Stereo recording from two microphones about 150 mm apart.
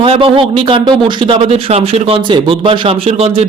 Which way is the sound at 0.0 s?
40° right (ahead or behind).